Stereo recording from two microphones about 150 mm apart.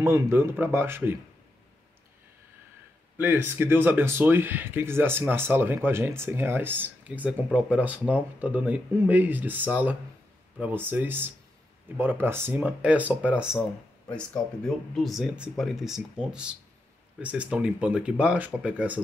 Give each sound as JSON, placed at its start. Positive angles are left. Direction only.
{"t": 0.0, "sound": "speech", "side_deg": -15}
{"t": 3.2, "sound": "speech", "side_deg": -15}